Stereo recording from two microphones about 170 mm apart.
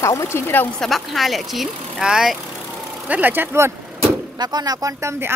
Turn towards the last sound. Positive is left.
turn(degrees=-15)  # may be behind; listen again after turning